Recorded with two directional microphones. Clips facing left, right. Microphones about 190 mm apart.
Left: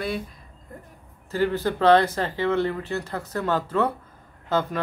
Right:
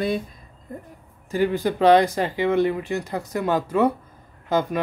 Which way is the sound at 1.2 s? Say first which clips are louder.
Right 2 dB; 15° right (ahead or behind).